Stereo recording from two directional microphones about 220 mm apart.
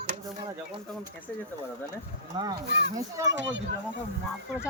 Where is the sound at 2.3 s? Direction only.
15° right (ahead or behind).